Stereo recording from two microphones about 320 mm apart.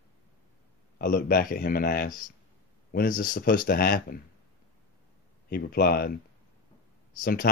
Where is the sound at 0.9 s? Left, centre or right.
Left.